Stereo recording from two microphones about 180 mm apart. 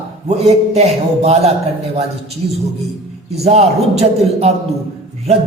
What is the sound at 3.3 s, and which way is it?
A man's voice, 35° right (ahead or behind).